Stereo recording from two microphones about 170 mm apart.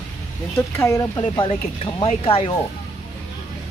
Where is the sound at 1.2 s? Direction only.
30° left (ahead or behind).